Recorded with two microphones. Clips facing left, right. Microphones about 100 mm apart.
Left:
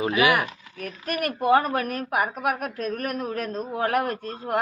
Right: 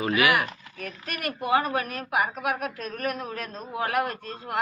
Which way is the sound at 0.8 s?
45° left (ahead or behind).